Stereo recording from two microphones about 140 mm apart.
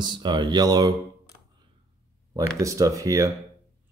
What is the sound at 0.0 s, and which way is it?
Speech, 35° right (ahead or behind).